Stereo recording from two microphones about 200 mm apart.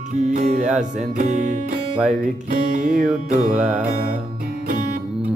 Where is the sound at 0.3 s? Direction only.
35° right (ahead or behind).